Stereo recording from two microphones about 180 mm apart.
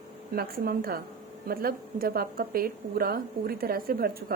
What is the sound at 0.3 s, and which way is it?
A woman's voice, 55° right (ahead or behind).